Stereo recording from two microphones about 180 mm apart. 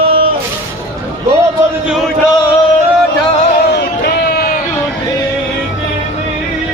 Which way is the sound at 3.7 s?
65° left (ahead or behind).